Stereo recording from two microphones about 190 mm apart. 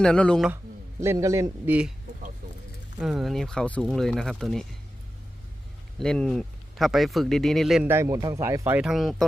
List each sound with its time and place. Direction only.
0.0 s speech: 5° left (ahead or behind)
0.5 s a man's voice: 15° right (ahead or behind)
3.0 s speech: centre (ahead or behind)
6.0 s speech: 5° left (ahead or behind)
7.9 s speech: 15° right (ahead or behind)